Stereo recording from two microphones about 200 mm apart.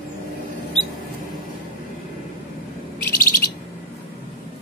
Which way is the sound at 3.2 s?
45° left (ahead or behind).